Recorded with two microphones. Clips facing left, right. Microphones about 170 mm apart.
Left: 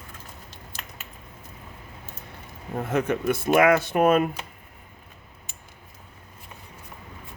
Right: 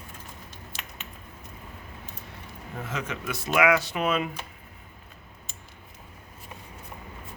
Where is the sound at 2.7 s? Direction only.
55° left (ahead or behind).